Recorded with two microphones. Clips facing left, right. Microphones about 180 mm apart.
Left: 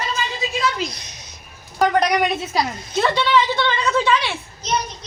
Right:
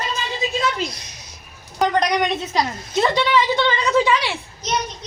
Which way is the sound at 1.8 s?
5° left (ahead or behind).